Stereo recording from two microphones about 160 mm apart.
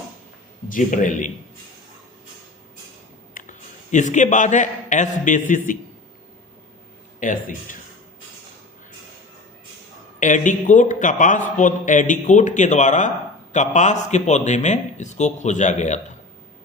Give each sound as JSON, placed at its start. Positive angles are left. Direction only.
{"t": 0.7, "sound": "a man's voice", "side_deg": 55}
{"t": 3.4, "sound": "a sound", "side_deg": 60}
{"t": 3.9, "sound": "a man's voice", "side_deg": 50}
{"t": 7.2, "sound": "speech", "side_deg": 55}
{"t": 10.2, "sound": "a man's voice", "side_deg": 50}